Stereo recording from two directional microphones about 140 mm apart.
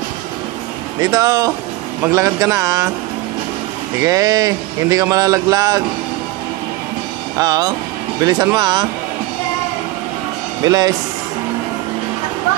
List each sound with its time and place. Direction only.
1.0 s speech: 25° right (ahead or behind)
4.0 s speech: 25° right (ahead or behind)
7.3 s speech: 25° right (ahead or behind)
10.6 s speech: 25° right (ahead or behind)